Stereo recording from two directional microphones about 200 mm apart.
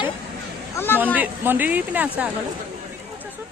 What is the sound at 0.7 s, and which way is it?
Speech, 10° left (ahead or behind).